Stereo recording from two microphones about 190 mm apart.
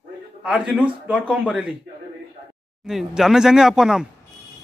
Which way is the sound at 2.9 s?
Centre (ahead or behind).